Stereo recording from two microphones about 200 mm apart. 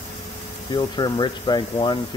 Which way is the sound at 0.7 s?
20° left (ahead or behind).